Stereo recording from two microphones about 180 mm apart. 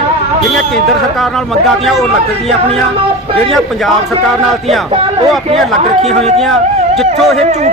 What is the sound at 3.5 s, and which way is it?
Speech, centre (ahead or behind).